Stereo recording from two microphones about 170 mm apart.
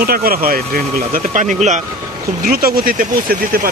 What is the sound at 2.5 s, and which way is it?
Speech, 60° right (ahead or behind).